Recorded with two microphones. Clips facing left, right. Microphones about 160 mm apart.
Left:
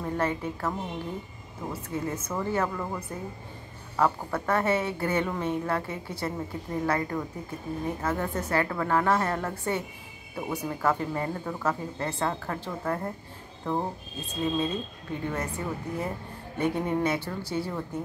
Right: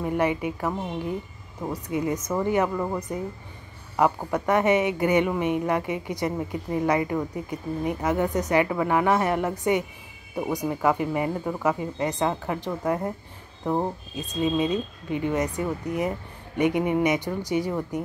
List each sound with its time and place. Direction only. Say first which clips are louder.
0.0 s a woman's voice: right 4 dB; 15° right (ahead or behind)
2.8 s speech: right 6 dB; 30° right (ahead or behind)
3.9 s a woman's voice: right 3 dB; 15° right (ahead or behind)